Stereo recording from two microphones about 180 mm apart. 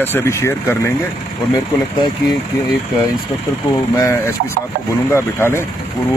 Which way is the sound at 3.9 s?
15° left (ahead or behind).